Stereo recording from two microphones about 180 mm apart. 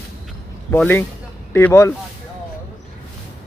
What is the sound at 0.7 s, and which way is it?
A man's voice, 10° left (ahead or behind).